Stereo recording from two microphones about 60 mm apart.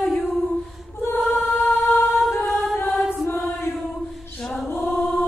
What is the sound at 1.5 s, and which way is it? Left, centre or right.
Singing, left.